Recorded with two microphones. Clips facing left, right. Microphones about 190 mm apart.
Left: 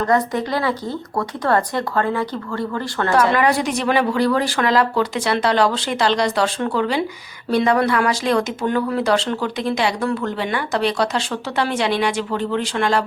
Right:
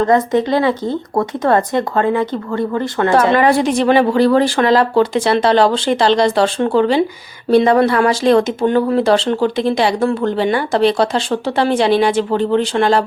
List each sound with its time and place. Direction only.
0.0 s speech: 25° right (ahead or behind)